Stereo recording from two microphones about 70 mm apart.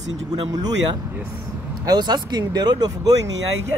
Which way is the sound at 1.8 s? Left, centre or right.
Right.